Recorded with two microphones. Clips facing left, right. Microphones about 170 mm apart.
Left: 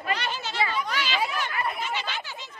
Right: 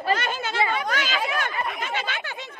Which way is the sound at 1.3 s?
65° right (ahead or behind).